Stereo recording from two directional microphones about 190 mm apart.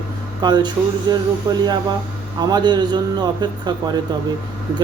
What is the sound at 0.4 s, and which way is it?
A man's voice, 25° right (ahead or behind).